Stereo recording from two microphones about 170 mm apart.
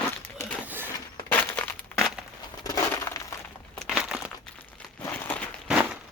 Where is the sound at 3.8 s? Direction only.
Centre (ahead or behind).